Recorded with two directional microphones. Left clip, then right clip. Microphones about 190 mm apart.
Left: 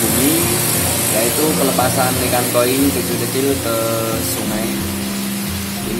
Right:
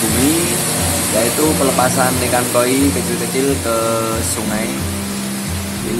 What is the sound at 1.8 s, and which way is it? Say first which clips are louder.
Speech: right 1 dB; centre (ahead or behind).